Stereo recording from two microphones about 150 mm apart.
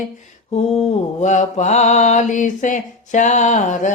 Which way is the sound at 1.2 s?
50° left (ahead or behind).